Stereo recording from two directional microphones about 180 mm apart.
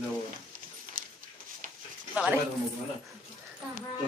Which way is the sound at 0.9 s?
50° right (ahead or behind).